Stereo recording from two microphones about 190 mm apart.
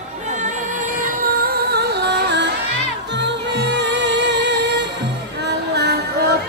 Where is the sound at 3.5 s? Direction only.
65° right (ahead or behind).